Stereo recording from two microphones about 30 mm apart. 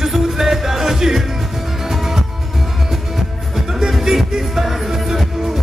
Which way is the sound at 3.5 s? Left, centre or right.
Centre.